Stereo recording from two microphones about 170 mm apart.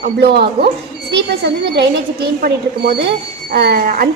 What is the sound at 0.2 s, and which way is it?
A woman's voice, 70° right (ahead or behind).